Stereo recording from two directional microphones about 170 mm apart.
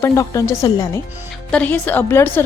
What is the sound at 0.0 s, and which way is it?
Speech, 20° left (ahead or behind).